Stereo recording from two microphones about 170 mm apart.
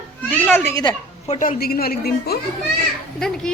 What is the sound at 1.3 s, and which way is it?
A woman's voice, 50° left (ahead or behind).